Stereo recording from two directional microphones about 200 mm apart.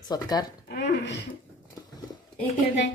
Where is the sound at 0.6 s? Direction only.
55° left (ahead or behind).